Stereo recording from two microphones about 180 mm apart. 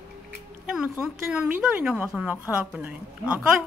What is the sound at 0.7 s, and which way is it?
A woman's voice, 5° right (ahead or behind).